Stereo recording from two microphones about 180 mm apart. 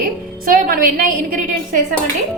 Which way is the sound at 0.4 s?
50° right (ahead or behind).